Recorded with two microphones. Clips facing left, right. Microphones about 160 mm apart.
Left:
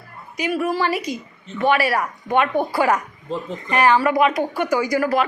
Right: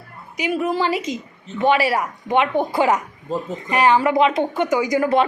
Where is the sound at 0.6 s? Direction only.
20° right (ahead or behind).